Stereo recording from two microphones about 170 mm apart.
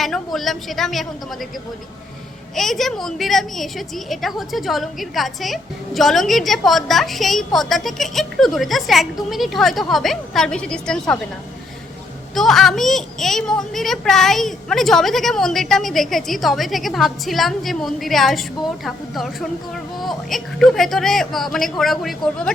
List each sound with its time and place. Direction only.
0.0 s a woman's voice: centre (ahead or behind)
2.6 s a woman's voice: centre (ahead or behind)
12.3 s a woman's voice: centre (ahead or behind)